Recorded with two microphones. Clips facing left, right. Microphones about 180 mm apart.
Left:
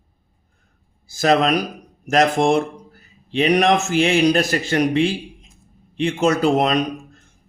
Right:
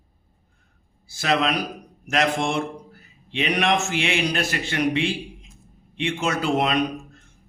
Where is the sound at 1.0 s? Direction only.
40° left (ahead or behind).